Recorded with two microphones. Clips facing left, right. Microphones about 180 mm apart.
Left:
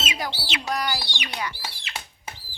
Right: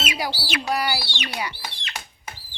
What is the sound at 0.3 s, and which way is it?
Bird, 20° left (ahead or behind).